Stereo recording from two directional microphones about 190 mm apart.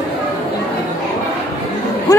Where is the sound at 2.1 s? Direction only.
20° left (ahead or behind).